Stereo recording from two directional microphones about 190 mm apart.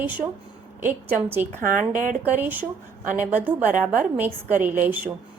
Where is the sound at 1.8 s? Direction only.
45° right (ahead or behind).